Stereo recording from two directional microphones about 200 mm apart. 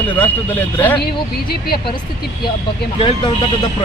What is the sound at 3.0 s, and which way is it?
Speech, 25° left (ahead or behind).